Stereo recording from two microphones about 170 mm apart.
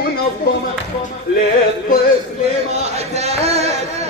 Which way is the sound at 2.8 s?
40° right (ahead or behind).